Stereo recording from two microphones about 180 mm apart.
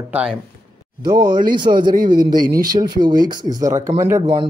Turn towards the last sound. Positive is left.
turn(degrees=-15)  # may be behind; listen again after turning